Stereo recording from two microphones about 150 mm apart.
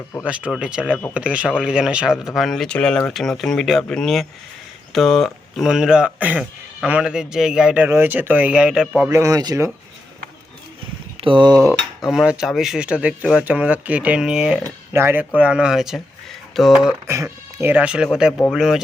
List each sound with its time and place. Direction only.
0.3 s dishes: 5° right (ahead or behind)
1.1 s speech: 10° right (ahead or behind)
6.8 s dishes: 5° right (ahead or behind)
9.0 s speech: 20° right (ahead or behind)
11.2 s speech: 35° right (ahead or behind)
11.7 s dishes: 5° right (ahead or behind)
15.4 s speech: 5° right (ahead or behind)
17.2 s dishes: 10° right (ahead or behind)
18.5 s speech: 5° right (ahead or behind)